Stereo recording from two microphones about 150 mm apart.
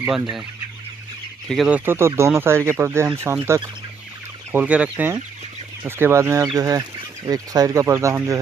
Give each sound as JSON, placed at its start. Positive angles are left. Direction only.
{"t": 1.5, "sound": "speech", "side_deg": 0}
{"t": 1.9, "sound": "speech", "side_deg": -15}